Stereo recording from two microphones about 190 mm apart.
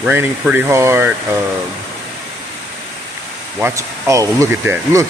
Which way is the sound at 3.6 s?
15° right (ahead or behind).